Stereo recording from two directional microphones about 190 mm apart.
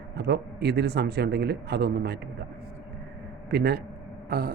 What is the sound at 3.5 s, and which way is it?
Speech, 60° right (ahead or behind).